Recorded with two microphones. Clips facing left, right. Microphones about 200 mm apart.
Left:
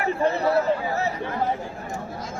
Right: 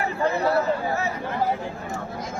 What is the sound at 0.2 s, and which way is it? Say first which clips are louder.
Speech: even; 25° left (ahead or behind).